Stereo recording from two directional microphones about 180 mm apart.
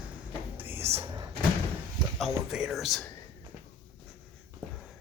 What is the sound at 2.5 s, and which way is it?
Speech, 5° right (ahead or behind).